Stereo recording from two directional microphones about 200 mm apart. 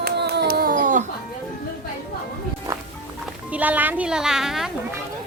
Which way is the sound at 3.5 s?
10° right (ahead or behind).